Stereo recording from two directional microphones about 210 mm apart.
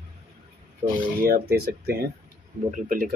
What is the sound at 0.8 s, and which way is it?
Speech, 40° right (ahead or behind).